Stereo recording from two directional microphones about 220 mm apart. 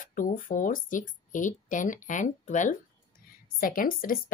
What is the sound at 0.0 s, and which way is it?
A woman's voice, 35° left (ahead or behind).